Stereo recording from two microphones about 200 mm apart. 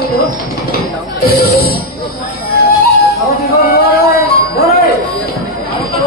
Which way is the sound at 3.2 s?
50° left (ahead or behind).